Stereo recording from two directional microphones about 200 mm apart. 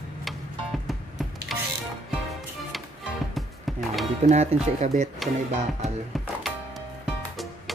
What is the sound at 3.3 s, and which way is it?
Music, centre (ahead or behind).